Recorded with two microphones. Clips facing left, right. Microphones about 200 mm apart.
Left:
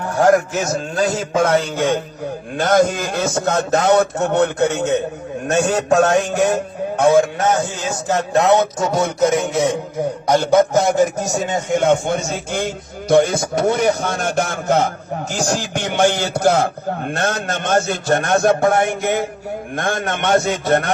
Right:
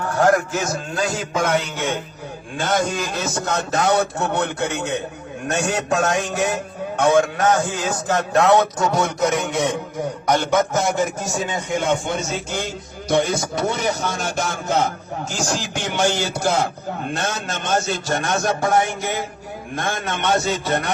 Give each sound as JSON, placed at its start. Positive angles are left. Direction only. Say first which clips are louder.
{"t": 1.4, "sound": "speech", "louder": "left 5 dB", "side_deg": 35}
{"t": 2.6, "sound": "speech", "louder": "left 6 dB", "side_deg": 50}
{"t": 8.0, "sound": "a man's voice", "louder": "left 2 dB", "side_deg": 15}